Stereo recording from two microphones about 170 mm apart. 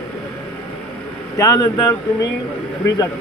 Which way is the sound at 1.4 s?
20° left (ahead or behind).